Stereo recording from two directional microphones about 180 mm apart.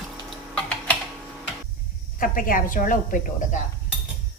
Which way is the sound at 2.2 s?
50° left (ahead or behind).